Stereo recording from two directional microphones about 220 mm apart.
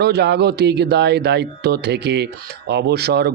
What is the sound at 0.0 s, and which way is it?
Speech, 50° right (ahead or behind).